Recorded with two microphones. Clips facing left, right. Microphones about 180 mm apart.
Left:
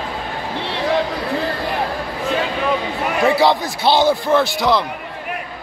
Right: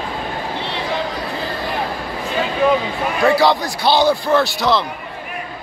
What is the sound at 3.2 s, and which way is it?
A man's voice, 20° left (ahead or behind).